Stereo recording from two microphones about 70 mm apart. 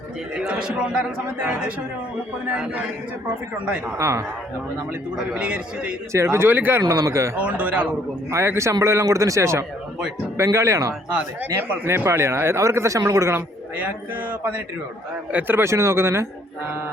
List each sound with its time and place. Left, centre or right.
0.3 s a man's voice: centre
3.9 s speech: right
5.3 s a man's voice: centre
6.1 s speech: right
6.8 s speech: right
7.3 s a man's voice: centre
8.3 s speech: right
13.3 s a man's voice: right